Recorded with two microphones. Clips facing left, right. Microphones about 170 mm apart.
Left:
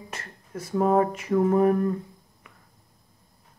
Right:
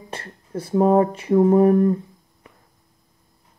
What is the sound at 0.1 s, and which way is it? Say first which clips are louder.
Speech: right 8 dB; 30° right (ahead or behind).